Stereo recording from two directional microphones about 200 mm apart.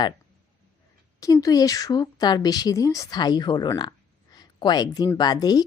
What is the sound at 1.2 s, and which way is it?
A woman's voice, 15° left (ahead or behind).